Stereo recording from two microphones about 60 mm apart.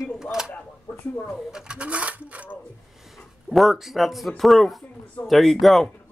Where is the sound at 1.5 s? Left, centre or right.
Centre.